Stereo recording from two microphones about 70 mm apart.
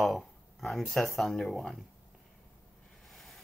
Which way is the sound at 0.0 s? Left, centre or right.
Centre.